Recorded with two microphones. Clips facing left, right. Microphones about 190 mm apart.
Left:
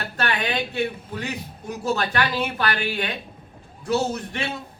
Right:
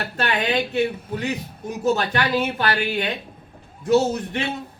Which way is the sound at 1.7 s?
20° right (ahead or behind).